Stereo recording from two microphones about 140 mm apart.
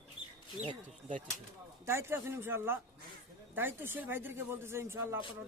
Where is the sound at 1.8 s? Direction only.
20° right (ahead or behind).